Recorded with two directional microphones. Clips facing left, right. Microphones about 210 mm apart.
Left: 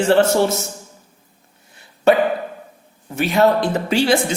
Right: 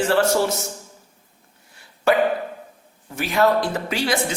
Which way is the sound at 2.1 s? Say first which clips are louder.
Left 3 dB; 20° left (ahead or behind).